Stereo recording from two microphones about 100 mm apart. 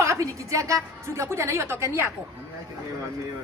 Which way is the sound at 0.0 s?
30° right (ahead or behind).